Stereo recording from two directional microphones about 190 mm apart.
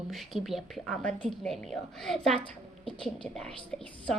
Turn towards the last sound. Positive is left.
turn(degrees=5)  # may be behind; listen again after turning